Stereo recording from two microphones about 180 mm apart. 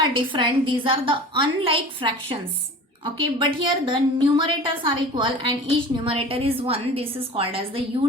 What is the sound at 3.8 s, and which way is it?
A woman's voice, 25° right (ahead or behind).